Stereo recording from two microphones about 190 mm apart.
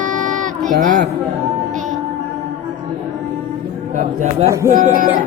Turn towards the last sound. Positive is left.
turn(degrees=-45)  # may be behind; listen again after turning